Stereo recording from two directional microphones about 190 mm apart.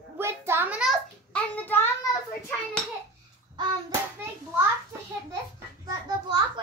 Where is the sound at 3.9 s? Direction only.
10° right (ahead or behind).